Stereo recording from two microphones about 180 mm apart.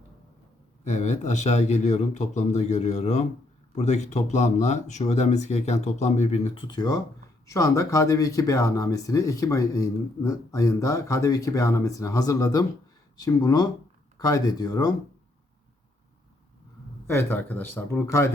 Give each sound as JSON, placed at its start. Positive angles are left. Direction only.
{"t": 0.9, "sound": "speech", "side_deg": 40}
{"t": 17.1, "sound": "speech", "side_deg": 10}